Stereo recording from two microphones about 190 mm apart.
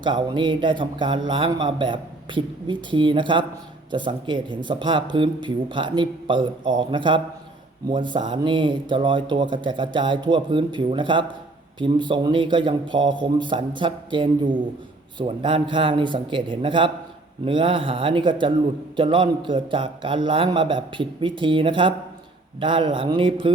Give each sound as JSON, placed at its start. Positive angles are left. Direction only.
{"t": 0.0, "sound": "speech", "side_deg": -25}